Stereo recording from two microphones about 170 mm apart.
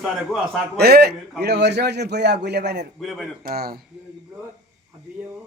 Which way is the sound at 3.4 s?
65° right (ahead or behind).